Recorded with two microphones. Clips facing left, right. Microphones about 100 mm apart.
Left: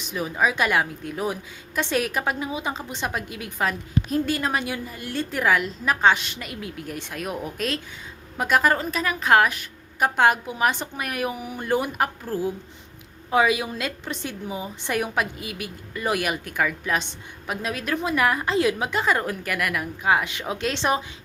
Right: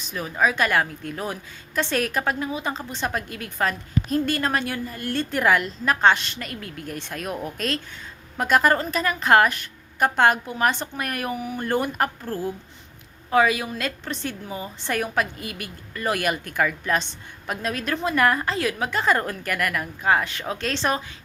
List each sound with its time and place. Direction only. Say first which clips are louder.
0.0 s a woman's voice: even; 15° left (ahead or behind)
18.4 s a woman's voice: left 3 dB; 20° left (ahead or behind)
19.0 s a woman's voice: right 4 dB; 5° left (ahead or behind)